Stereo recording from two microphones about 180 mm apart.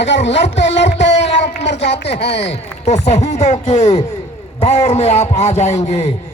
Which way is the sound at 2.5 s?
40° left (ahead or behind).